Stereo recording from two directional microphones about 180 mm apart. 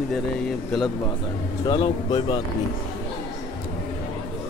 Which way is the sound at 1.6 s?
25° left (ahead or behind).